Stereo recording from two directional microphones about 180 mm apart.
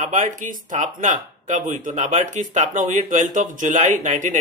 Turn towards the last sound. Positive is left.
turn(degrees=-45)  # may be behind; listen again after turning